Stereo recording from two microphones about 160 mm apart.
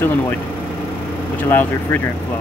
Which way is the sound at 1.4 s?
10° left (ahead or behind).